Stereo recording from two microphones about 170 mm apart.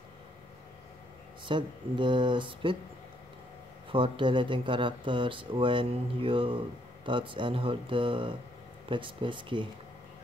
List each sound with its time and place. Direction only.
1.4 s speech: 30° right (ahead or behind)
3.9 s speech: 30° right (ahead or behind)